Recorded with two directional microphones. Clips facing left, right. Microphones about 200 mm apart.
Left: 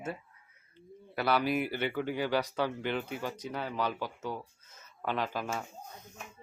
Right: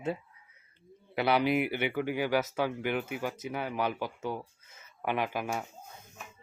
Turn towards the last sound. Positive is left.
turn(degrees=-15)  # may be behind; listen again after turning